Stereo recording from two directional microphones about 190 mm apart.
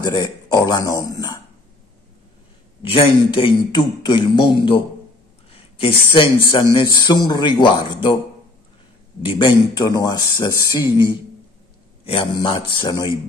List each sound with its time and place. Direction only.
0.0 s speech: 20° left (ahead or behind)
2.8 s a man's voice: 30° left (ahead or behind)
9.2 s a man's voice: 25° left (ahead or behind)
12.1 s a man's voice: 30° left (ahead or behind)